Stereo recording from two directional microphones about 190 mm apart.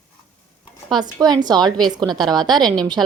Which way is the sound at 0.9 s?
20° right (ahead or behind).